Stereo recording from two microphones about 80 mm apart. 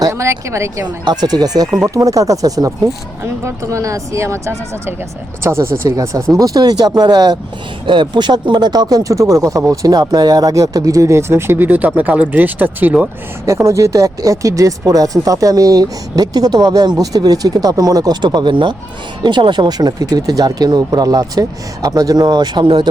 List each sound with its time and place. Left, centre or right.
0.0 s speech: right
1.0 s speech: right
6.3 s speech: right
7.9 s speech: right
13.4 s speech: right